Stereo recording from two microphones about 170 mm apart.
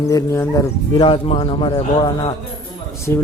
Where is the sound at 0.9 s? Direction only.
30° left (ahead or behind).